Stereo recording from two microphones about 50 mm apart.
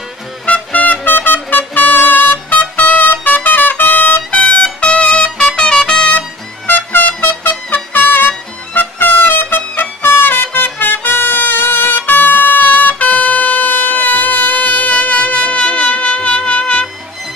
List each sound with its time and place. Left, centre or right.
0.5 s music: left
1.0 s trumpet: left
5.6 s music: centre
6.9 s music: left